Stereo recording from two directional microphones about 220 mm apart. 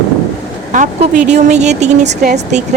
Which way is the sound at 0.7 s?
35° right (ahead or behind).